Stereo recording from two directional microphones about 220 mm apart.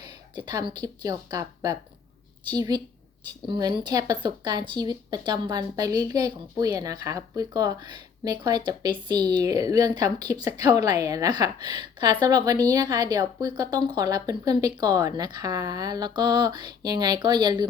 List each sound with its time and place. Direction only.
0.3 s speech: 20° right (ahead or behind)